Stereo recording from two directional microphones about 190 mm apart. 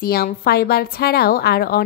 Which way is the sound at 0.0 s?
55° left (ahead or behind).